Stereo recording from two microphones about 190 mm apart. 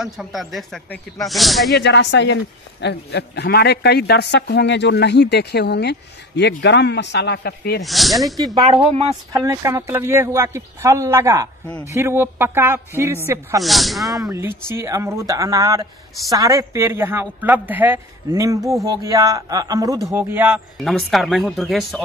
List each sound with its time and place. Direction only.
0.0 s speech: centre (ahead or behind)
1.7 s a man's voice: 65° left (ahead or behind)
7.8 s speech: centre (ahead or behind)
8.5 s speech: 25° right (ahead or behind)
9.3 s speech: 15° right (ahead or behind)
13.6 s speech: centre (ahead or behind)
14.3 s speech: 15° right (ahead or behind)
20.8 s speech: centre (ahead or behind)